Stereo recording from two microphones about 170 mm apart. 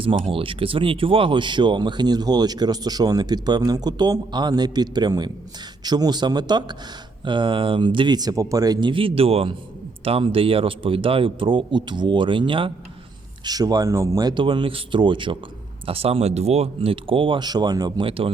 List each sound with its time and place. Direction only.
0.0 s speech: 30° right (ahead or behind)